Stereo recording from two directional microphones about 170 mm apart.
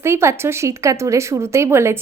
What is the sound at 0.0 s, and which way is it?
Speech, 15° right (ahead or behind).